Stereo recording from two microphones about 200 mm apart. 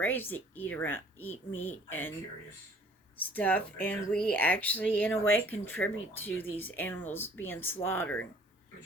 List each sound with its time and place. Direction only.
0.0 s speech: 10° left (ahead or behind)
3.2 s speech: 10° left (ahead or behind)